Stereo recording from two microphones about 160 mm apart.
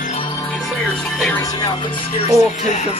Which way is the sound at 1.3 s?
25° left (ahead or behind).